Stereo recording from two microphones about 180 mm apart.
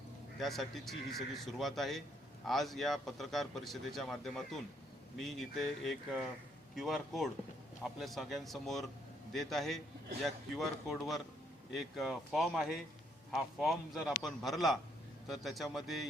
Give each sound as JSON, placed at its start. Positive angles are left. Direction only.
{"t": 0.3, "sound": "a man's voice", "side_deg": 0}